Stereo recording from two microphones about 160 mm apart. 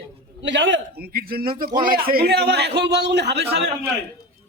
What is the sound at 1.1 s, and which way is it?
A man's voice, 65° right (ahead or behind).